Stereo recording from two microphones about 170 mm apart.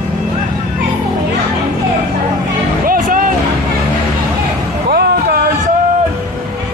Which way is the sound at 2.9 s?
50° right (ahead or behind).